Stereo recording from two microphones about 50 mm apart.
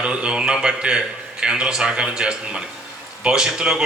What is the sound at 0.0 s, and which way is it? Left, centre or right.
A man's voice, centre.